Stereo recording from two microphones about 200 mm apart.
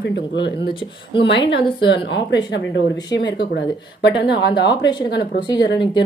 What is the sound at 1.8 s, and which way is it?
Speech, 65° left (ahead or behind).